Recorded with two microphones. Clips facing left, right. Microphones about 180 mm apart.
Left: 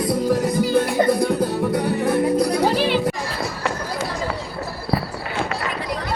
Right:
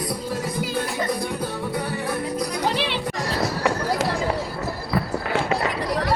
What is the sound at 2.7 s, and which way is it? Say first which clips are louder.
Music: left 6 dB; 45° left (ahead or behind).